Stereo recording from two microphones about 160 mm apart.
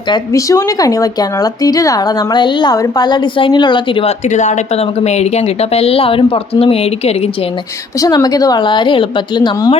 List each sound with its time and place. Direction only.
0.1 s speech: 20° left (ahead or behind)
4.3 s a woman's voice: 50° left (ahead or behind)
8.0 s speech: 25° left (ahead or behind)